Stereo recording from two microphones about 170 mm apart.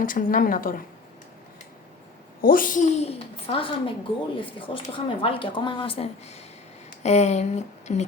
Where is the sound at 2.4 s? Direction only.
55° left (ahead or behind).